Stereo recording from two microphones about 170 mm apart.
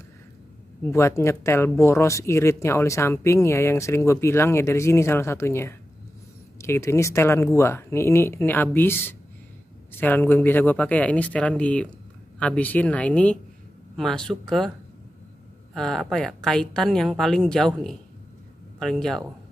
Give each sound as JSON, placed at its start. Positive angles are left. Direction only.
{"t": 0.9, "sound": "a woman's voice", "side_deg": 15}
{"t": 15.7, "sound": "a woman's voice", "side_deg": 5}